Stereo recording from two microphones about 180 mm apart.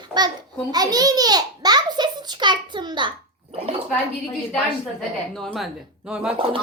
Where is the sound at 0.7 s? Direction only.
20° right (ahead or behind).